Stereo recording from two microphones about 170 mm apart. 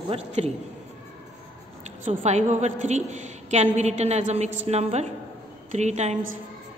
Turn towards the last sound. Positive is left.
turn(degrees=-40)  # may be behind; listen again after turning